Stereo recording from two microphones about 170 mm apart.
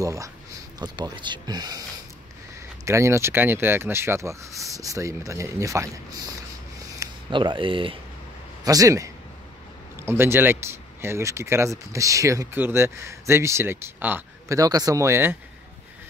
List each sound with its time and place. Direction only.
0.0 s speech: 20° right (ahead or behind)
8.6 s speech: 20° right (ahead or behind)